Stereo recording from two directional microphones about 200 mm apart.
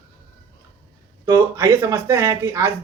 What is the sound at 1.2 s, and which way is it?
Speech, 15° right (ahead or behind).